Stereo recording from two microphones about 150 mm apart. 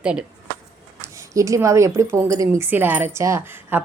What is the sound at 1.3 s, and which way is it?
A woman's voice, 20° right (ahead or behind).